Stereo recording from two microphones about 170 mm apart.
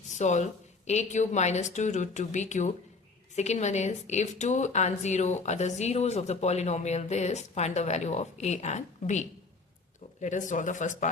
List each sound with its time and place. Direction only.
0.1 s a woman's voice: 45° left (ahead or behind)